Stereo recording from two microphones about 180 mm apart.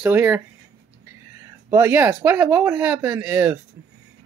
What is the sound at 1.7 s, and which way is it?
Speech, 10° right (ahead or behind).